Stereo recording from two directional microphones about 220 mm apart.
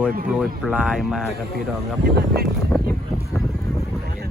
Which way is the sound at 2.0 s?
45° right (ahead or behind).